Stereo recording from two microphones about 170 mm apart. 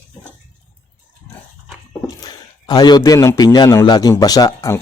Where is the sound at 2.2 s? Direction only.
25° left (ahead or behind).